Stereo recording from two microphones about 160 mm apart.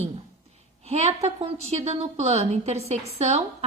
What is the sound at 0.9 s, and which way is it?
A woman's voice, 40° right (ahead or behind).